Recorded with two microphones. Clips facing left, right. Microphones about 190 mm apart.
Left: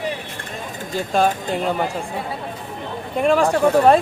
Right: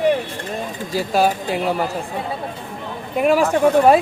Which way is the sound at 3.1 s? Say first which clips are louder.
Right 1 dB; 5° right (ahead or behind).